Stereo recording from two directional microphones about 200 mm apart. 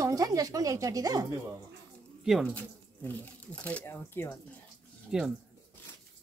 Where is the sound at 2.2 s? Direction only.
Centre (ahead or behind).